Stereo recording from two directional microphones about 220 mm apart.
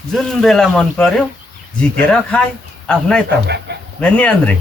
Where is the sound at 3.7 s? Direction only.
50° right (ahead or behind).